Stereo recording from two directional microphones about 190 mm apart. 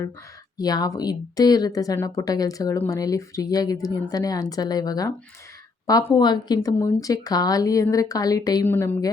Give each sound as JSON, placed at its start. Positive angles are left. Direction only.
{"t": 0.5, "sound": "a woman's voice", "side_deg": 20}